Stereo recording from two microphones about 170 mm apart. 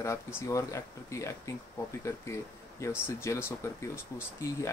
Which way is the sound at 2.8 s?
15° left (ahead or behind).